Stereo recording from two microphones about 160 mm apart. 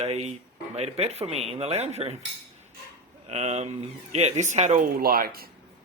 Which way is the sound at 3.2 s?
45° right (ahead or behind).